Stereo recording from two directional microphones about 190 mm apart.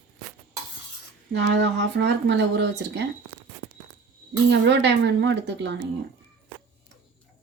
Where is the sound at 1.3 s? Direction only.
65° right (ahead or behind).